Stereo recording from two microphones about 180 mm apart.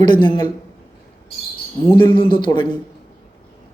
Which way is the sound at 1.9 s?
25° left (ahead or behind).